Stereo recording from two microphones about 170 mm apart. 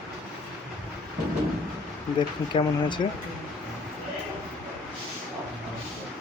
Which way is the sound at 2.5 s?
30° left (ahead or behind).